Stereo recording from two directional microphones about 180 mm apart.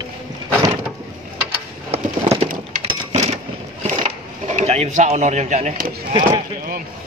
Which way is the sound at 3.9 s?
40° right (ahead or behind).